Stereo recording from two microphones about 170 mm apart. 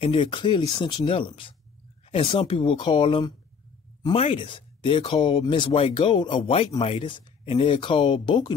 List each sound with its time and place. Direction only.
0.0 s speech: 30° left (ahead or behind)